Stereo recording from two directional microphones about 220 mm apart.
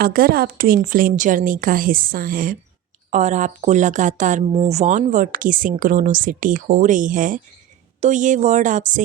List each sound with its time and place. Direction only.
0.0 s speech: 40° right (ahead or behind)